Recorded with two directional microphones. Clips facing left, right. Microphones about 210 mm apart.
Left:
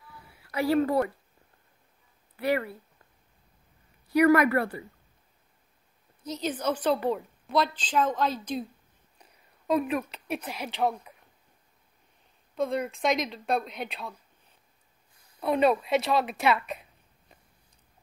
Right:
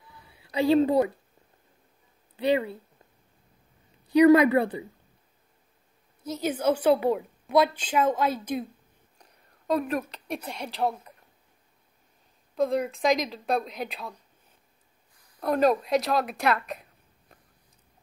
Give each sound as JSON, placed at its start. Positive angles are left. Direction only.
{"t": 0.3, "sound": "a woman's voice", "side_deg": -20}
{"t": 2.3, "sound": "speech", "side_deg": -20}
{"t": 4.1, "sound": "a woman's voice", "side_deg": -20}
{"t": 6.2, "sound": "a woman's voice", "side_deg": -10}
{"t": 8.5, "sound": "a woman's voice", "side_deg": -55}
{"t": 9.2, "sound": "speech", "side_deg": 5}
{"t": 12.5, "sound": "speech", "side_deg": 0}
{"t": 15.4, "sound": "speech", "side_deg": 0}